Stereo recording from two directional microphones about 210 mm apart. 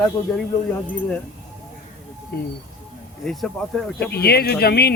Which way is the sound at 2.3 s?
45° left (ahead or behind).